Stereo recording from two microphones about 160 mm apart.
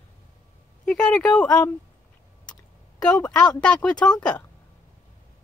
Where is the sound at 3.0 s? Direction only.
5° left (ahead or behind).